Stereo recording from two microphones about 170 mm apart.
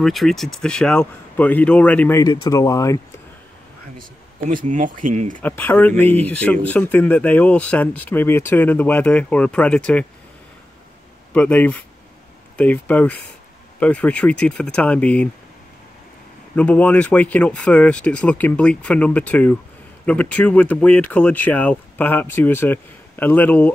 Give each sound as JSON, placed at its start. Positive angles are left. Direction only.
{"t": 0.0, "sound": "speech", "side_deg": 0}
{"t": 4.5, "sound": "speech", "side_deg": -50}
{"t": 5.4, "sound": "speech", "side_deg": 10}
{"t": 11.3, "sound": "speech", "side_deg": 10}
{"t": 16.5, "sound": "speech", "side_deg": 10}